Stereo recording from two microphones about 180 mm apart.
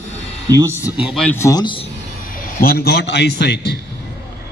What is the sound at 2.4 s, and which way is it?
A man's voice, 60° left (ahead or behind).